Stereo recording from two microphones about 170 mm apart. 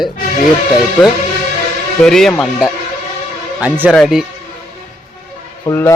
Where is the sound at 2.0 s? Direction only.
5° left (ahead or behind).